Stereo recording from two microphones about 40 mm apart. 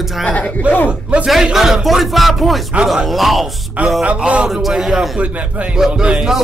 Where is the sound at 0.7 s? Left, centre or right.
Right.